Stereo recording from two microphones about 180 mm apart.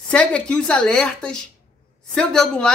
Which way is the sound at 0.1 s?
5° left (ahead or behind).